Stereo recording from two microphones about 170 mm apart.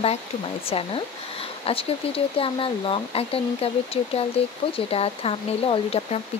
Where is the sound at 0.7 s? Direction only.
35° left (ahead or behind).